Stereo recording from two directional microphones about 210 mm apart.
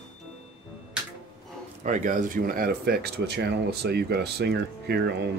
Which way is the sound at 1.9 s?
40° right (ahead or behind).